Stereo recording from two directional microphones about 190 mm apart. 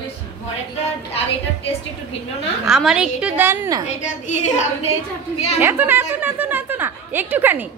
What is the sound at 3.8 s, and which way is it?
A woman's voice, 40° left (ahead or behind).